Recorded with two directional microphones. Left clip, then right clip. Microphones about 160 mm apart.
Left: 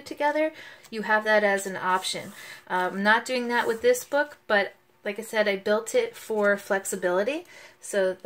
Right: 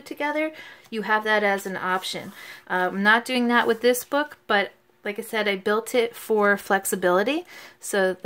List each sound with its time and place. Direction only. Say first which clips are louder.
0.2 s speech: left 1 dB; 25° right (ahead or behind); by 8.2 s 60° right (ahead or behind)